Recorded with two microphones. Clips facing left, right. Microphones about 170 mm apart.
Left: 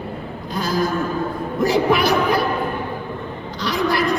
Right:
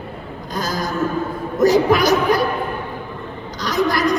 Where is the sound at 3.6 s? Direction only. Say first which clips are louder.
Right 1 dB; 40° right (ahead or behind).